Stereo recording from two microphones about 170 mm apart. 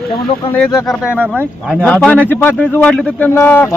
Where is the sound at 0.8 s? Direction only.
5° right (ahead or behind).